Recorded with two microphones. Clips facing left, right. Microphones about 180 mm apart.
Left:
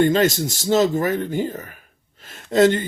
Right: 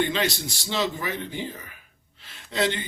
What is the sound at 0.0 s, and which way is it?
Speech, 45° left (ahead or behind).